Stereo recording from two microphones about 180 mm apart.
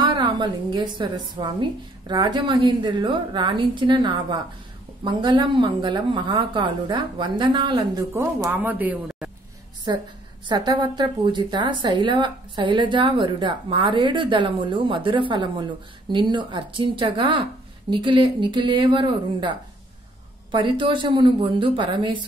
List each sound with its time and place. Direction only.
0.0 s a woman's voice: 25° right (ahead or behind)
8.1 s speech: 10° right (ahead or behind)
10.4 s a woman's voice: 25° right (ahead or behind)
20.5 s a woman's voice: 25° right (ahead or behind)